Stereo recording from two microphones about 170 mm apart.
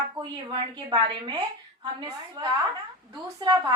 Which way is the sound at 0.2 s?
25° right (ahead or behind).